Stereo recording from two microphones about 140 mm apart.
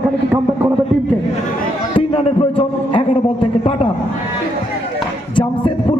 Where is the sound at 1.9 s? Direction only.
35° left (ahead or behind).